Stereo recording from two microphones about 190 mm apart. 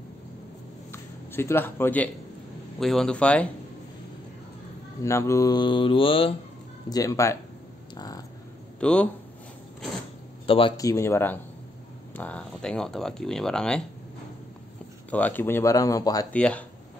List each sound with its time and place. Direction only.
0.9 s a sound: 10° left (ahead or behind)
2.8 s speech: centre (ahead or behind)
5.0 s mantra: 15° left (ahead or behind)
6.9 s mantra: 20° left (ahead or behind)
7.9 s a sound: 20° left (ahead or behind)
8.7 s speech: 5° left (ahead or behind)
10.4 s speech: 30° left (ahead or behind); by 13.8 s 5° left (ahead or behind)
15.0 s speech: 10° left (ahead or behind)
16.3 s speech: 5° left (ahead or behind)